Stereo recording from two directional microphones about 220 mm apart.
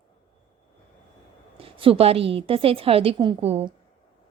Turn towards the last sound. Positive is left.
turn(degrees=-30)  # may be behind; listen again after turning